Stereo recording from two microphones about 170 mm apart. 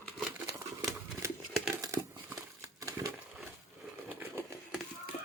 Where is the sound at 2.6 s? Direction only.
20° right (ahead or behind).